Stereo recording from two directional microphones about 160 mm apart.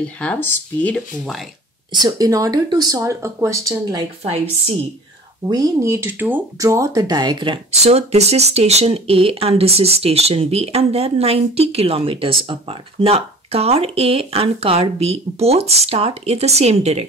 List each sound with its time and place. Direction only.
0.2 s speech: 10° left (ahead or behind)
1.9 s speech: 25° right (ahead or behind)
4.2 s speech: 40° right (ahead or behind)
5.5 s speech: 20° right (ahead or behind); by 17.0 s 40° right (ahead or behind)